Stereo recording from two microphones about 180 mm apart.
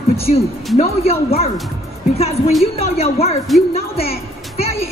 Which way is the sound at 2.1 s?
35° left (ahead or behind).